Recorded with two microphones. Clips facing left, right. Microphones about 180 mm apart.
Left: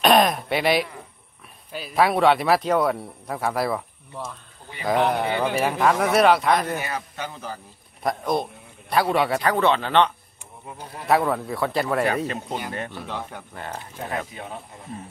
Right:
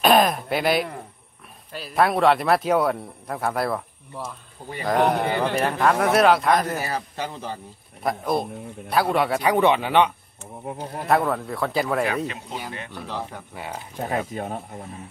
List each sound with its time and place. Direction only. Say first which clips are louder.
0.0 s throat clearing: even; centre (ahead or behind)
1.7 s speech: even; centre (ahead or behind)
6.8 s speech: right 2 dB; 35° right (ahead or behind)
8.0 s speech: even; 5° right (ahead or behind)
9.4 s speech: right 2 dB; 15° right (ahead or behind)
10.6 s speech: right 7 dB; 55° right (ahead or behind)
11.1 s speech: left 1 dB; centre (ahead or behind)
12.3 s speech: left 4 dB; 40° left (ahead or behind)
12.9 s speech: right 1 dB; centre (ahead or behind)
14.3 s speech: right 6 dB; 45° right (ahead or behind)